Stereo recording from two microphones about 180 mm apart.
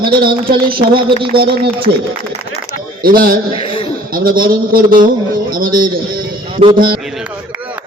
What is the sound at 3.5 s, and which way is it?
Speech, 30° left (ahead or behind).